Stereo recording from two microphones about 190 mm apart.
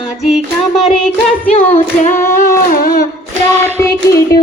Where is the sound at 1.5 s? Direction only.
35° left (ahead or behind).